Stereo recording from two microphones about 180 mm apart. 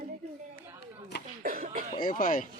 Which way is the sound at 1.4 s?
50° right (ahead or behind).